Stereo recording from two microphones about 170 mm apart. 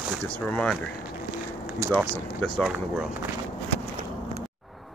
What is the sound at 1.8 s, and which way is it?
Speech, 15° right (ahead or behind).